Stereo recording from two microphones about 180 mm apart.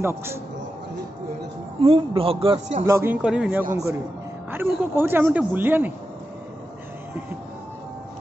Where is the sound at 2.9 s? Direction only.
15° right (ahead or behind).